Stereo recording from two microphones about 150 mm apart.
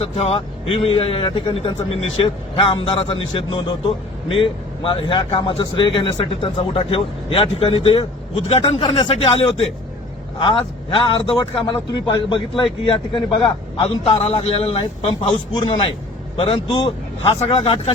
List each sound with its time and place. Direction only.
0.0 s speech: 45° left (ahead or behind)
14.0 s speech: 40° left (ahead or behind)